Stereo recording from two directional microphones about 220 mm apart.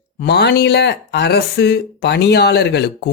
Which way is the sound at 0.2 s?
50° left (ahead or behind).